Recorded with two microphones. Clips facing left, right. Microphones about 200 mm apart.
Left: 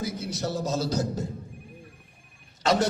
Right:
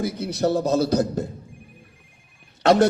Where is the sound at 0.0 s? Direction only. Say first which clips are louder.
Right 8 dB; 60° right (ahead or behind).